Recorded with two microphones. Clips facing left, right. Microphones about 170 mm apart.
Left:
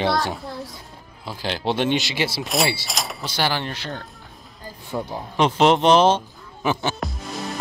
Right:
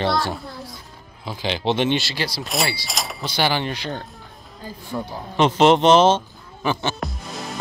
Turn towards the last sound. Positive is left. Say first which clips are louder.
# left 2 dB
turn(degrees=0)  # may be behind; listen again after turning